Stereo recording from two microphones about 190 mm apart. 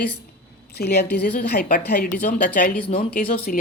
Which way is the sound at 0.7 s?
60° left (ahead or behind).